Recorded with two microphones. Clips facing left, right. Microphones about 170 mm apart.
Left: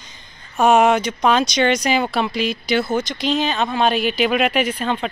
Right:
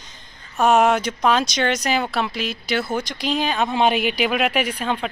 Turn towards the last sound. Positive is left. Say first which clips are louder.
# left 2 dB
turn(degrees=-10)  # may be behind; listen again after turning